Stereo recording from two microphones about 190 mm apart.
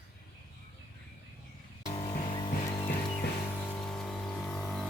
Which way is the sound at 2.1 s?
25° left (ahead or behind).